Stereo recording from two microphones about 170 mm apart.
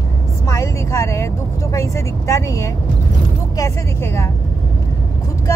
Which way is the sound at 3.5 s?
15° left (ahead or behind).